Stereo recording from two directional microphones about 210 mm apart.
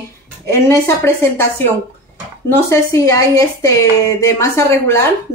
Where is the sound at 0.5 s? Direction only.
15° left (ahead or behind).